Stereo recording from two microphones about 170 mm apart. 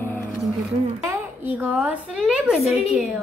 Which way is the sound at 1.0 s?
15° right (ahead or behind).